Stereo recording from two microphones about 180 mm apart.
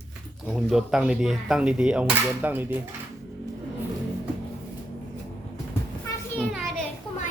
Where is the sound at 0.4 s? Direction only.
Centre (ahead or behind).